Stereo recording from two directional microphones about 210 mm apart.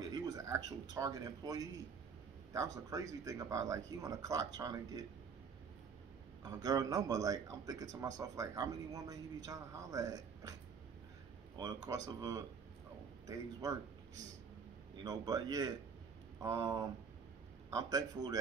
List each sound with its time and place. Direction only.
0.0 s a man's voice: 20° right (ahead or behind)
6.4 s a man's voice: 20° right (ahead or behind)
11.5 s a man's voice: 15° right (ahead or behind)